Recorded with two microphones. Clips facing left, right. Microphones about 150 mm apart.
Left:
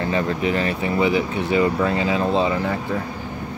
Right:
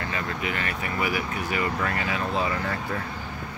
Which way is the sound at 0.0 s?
25° left (ahead or behind).